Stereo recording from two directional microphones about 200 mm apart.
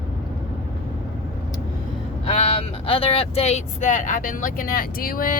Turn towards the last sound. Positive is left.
turn(degrees=45)  # may be behind; listen again after turning